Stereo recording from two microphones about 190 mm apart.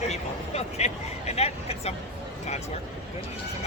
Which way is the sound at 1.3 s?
35° left (ahead or behind).